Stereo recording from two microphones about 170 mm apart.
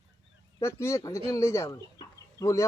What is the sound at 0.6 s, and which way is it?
A man's voice, 15° left (ahead or behind).